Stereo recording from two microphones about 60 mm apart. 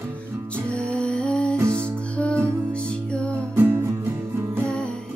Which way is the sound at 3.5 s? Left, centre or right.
Right.